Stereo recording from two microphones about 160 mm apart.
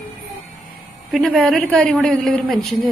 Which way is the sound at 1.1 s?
Centre (ahead or behind).